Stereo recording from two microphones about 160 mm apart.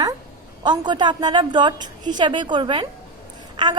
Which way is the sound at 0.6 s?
25° right (ahead or behind).